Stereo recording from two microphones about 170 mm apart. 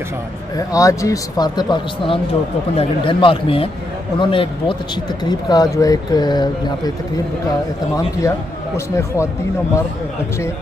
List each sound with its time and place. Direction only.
0.6 s a man's voice: 20° left (ahead or behind)
8.7 s speech: 15° left (ahead or behind)